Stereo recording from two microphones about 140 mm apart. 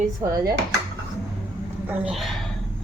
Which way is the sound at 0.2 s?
25° right (ahead or behind).